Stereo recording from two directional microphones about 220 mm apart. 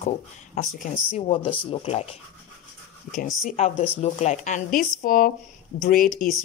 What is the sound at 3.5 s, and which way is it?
Speech, 30° left (ahead or behind).